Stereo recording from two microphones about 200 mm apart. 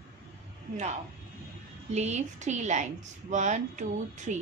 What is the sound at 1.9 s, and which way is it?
A woman's voice, 35° right (ahead or behind).